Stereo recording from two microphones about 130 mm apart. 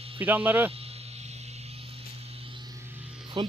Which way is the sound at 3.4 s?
40° right (ahead or behind).